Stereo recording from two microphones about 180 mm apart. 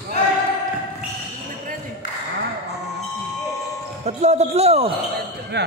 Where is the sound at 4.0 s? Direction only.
40° right (ahead or behind).